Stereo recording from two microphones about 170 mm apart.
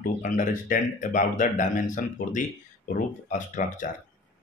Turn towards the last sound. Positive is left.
turn(degrees=50)  # may be behind; listen again after turning